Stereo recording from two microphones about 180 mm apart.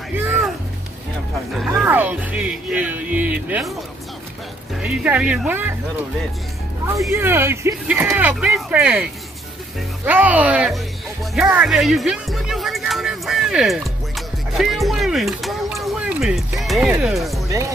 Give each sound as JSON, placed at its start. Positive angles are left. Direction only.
{"t": 1.8, "sound": "speech", "side_deg": -10}
{"t": 4.7, "sound": "speech", "side_deg": -5}
{"t": 7.1, "sound": "speech", "side_deg": -15}
{"t": 10.0, "sound": "speech", "side_deg": -10}
{"t": 17.5, "sound": "speech", "side_deg": -20}